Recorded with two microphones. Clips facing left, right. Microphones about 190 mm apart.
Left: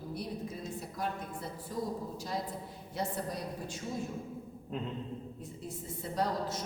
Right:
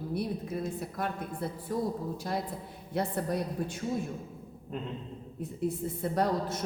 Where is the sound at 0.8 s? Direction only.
60° right (ahead or behind).